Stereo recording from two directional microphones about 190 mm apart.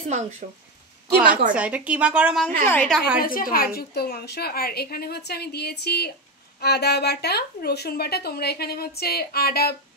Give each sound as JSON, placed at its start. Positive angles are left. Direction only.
{"t": 0.4, "sound": "a woman's voice", "side_deg": -50}
{"t": 1.5, "sound": "speech", "side_deg": -5}
{"t": 2.6, "sound": "a woman's voice", "side_deg": 10}
{"t": 3.2, "sound": "a woman's voice", "side_deg": 50}